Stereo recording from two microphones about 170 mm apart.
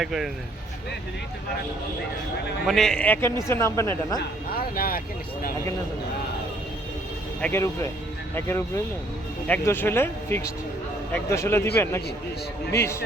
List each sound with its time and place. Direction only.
0.0 s speech: centre (ahead or behind)
2.6 s speech: 5° left (ahead or behind)
4.2 s speech: 60° left (ahead or behind)
7.4 s speech: 15° left (ahead or behind)